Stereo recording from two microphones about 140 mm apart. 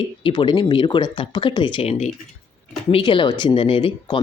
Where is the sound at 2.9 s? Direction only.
35° left (ahead or behind).